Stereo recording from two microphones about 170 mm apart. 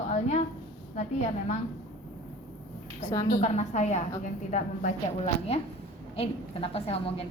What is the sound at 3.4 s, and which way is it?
A woman's voice, 40° left (ahead or behind).